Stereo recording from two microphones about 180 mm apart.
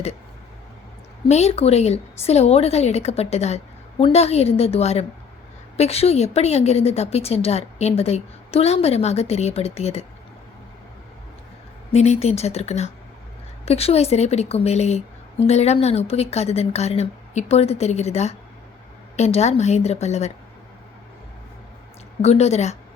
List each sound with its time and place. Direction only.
1.3 s a woman's voice: 35° left (ahead or behind)
11.9 s a woman's voice: 35° left (ahead or behind)
22.2 s a woman's voice: 35° left (ahead or behind)